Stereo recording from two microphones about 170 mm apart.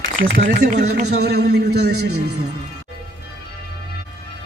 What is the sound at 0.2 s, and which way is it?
A man's voice, 65° right (ahead or behind).